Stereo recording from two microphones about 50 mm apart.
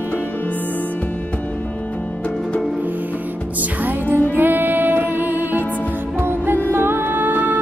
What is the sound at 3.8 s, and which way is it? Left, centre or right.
Music, right.